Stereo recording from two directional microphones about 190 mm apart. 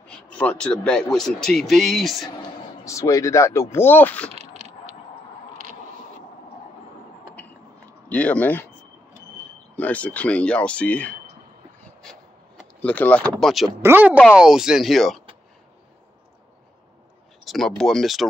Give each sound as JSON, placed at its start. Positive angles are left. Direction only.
{"t": 0.1, "sound": "speech", "side_deg": 5}
{"t": 2.8, "sound": "speech", "side_deg": 15}
{"t": 4.3, "sound": "a sound", "side_deg": -35}
{"t": 8.1, "sound": "speech", "side_deg": 5}
{"t": 9.8, "sound": "speech", "side_deg": 10}
{"t": 12.0, "sound": "a sound", "side_deg": 0}
{"t": 13.7, "sound": "speech", "side_deg": -10}
{"t": 17.5, "sound": "speech", "side_deg": 0}